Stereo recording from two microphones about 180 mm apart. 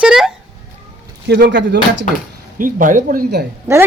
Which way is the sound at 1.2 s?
65° right (ahead or behind).